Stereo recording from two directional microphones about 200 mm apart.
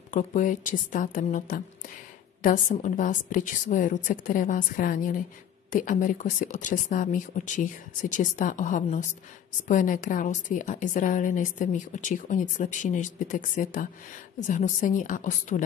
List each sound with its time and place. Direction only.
0.1 s a woman's voice: 40° left (ahead or behind)